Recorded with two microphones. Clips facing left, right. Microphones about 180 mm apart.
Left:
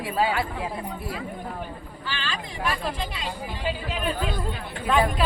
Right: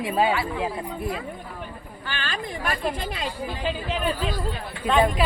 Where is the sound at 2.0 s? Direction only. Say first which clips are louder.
Right 2 dB; 50° right (ahead or behind).